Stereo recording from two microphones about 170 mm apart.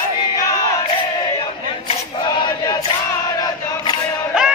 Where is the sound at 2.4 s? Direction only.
25° left (ahead or behind).